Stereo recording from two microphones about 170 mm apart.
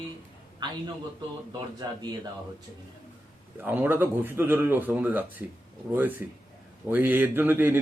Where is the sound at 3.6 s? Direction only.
10° right (ahead or behind).